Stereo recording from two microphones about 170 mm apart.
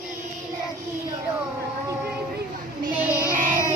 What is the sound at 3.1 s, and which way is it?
Child singing, 15° left (ahead or behind).